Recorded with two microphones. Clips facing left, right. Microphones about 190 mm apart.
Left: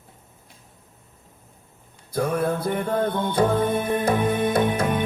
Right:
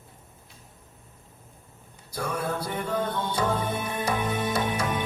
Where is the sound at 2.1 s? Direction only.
55° left (ahead or behind).